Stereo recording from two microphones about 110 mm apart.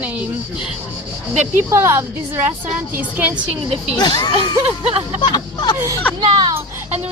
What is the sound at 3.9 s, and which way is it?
Speech, 40° left (ahead or behind).